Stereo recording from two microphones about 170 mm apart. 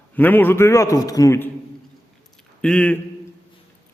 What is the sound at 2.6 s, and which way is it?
Speech, 5° left (ahead or behind).